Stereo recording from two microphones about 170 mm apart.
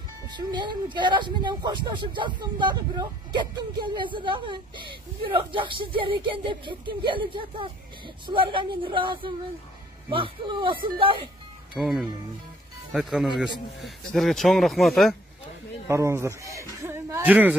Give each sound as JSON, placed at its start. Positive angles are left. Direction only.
{"t": 0.3, "sound": "speech", "side_deg": -25}
{"t": 11.7, "sound": "speech", "side_deg": -5}
{"t": 15.9, "sound": "speech", "side_deg": -15}
{"t": 16.8, "sound": "a sound", "side_deg": -15}